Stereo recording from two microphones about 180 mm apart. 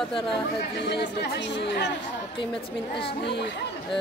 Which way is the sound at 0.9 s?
70° left (ahead or behind).